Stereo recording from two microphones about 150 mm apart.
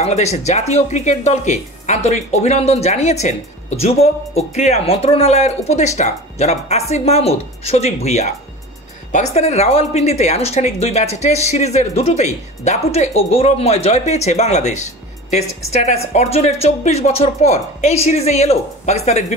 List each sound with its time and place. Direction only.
0.0 s a woman's voice: 45° left (ahead or behind)